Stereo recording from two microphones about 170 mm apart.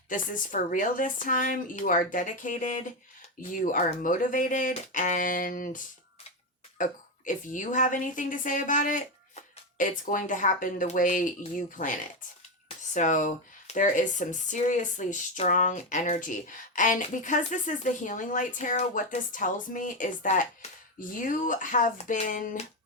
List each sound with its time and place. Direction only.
0.1 s speech: 50° left (ahead or behind)
12.9 s speech: 45° left (ahead or behind)